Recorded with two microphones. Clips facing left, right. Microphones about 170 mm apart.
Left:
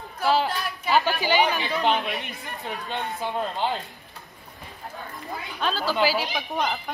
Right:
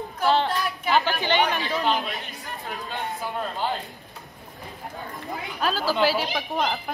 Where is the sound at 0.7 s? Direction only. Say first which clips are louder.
Even; centre (ahead or behind).